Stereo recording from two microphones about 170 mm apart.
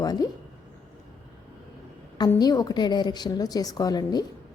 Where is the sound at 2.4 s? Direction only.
20° left (ahead or behind).